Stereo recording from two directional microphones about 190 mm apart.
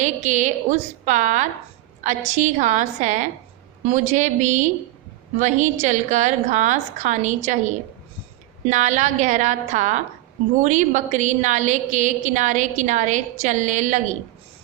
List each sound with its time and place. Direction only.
0.0 s a woman's voice: 40° right (ahead or behind)